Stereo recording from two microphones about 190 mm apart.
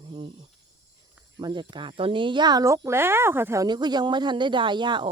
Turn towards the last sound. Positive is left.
turn(degrees=-25)  # may be behind; listen again after turning